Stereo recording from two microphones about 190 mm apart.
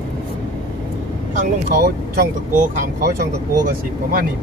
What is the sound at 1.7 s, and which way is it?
Speech, 50° right (ahead or behind).